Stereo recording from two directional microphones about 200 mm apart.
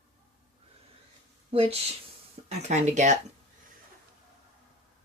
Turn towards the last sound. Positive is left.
turn(degrees=-35)  # may be behind; listen again after turning